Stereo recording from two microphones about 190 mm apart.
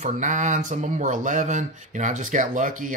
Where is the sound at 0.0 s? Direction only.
40° right (ahead or behind).